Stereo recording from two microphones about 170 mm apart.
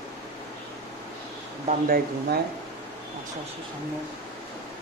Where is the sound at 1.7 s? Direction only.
65° right (ahead or behind).